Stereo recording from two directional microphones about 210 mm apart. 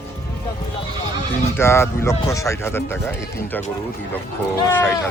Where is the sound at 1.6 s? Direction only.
10° left (ahead or behind).